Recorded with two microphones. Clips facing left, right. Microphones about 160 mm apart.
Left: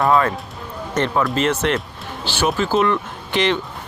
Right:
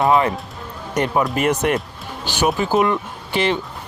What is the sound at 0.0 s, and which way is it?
Speech, 20° right (ahead or behind).